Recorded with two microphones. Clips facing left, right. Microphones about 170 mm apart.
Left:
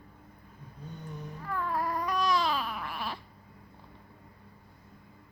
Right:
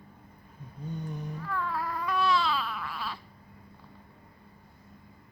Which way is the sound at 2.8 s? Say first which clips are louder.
Left 1 dB; 20° left (ahead or behind).